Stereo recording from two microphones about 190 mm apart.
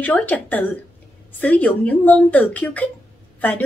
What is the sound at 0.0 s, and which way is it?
Speech, 10° left (ahead or behind).